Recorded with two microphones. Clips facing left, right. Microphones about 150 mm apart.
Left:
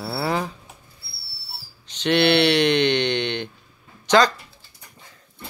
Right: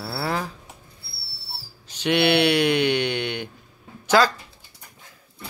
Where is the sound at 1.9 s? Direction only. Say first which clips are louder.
Left 2 dB; 10° right (ahead or behind).